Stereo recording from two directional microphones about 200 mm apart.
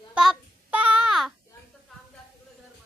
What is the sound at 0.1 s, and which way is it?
Child singing, 5° right (ahead or behind).